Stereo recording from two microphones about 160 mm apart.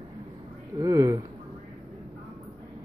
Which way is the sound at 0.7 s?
20° right (ahead or behind).